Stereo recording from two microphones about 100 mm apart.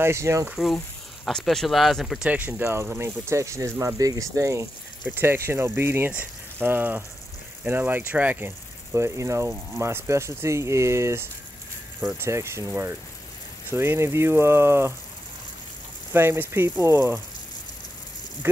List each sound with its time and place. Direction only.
0.0 s speech: 30° right (ahead or behind)
1.2 s speech: 5° left (ahead or behind)
2.2 s speech: 15° right (ahead or behind); by 4.6 s 30° right (ahead or behind)
5.0 s speech: 20° right (ahead or behind)
16.1 s speech: 20° right (ahead or behind)
18.4 s speech: 25° right (ahead or behind)